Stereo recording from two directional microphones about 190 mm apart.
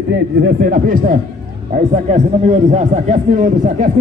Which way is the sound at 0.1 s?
55° right (ahead or behind).